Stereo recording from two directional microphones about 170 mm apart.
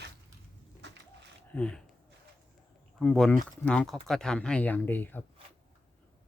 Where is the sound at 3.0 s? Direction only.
5° left (ahead or behind).